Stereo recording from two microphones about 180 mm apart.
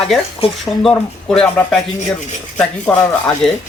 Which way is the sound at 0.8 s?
5° left (ahead or behind).